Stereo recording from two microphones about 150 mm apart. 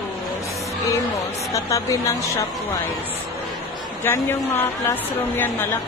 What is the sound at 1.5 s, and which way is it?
Speech, 20° left (ahead or behind).